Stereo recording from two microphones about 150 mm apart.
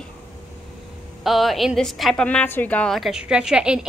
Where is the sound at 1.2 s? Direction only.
Centre (ahead or behind).